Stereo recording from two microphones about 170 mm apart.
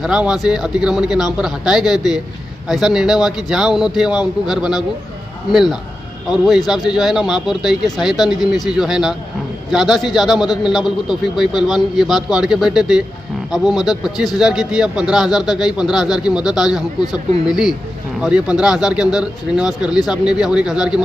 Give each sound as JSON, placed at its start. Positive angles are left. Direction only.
{"t": 0.0, "sound": "a man's voice", "side_deg": -5}
{"t": 17.0, "sound": "speech", "side_deg": 25}
{"t": 17.5, "sound": "a man's voice", "side_deg": 0}